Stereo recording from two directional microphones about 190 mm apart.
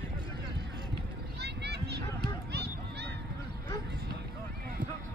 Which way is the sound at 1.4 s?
60° right (ahead or behind).